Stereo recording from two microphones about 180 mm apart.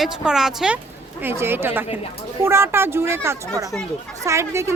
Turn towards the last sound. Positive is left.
turn(degrees=-15)  # may be behind; listen again after turning